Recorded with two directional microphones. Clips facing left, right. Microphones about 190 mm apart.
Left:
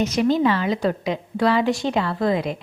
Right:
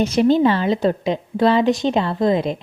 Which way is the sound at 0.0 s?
30° right (ahead or behind).